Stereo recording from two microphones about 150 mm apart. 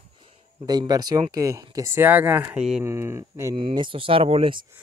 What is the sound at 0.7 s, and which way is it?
Speech, 25° right (ahead or behind).